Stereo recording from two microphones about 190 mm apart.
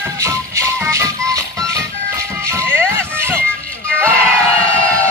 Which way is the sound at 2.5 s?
15° right (ahead or behind).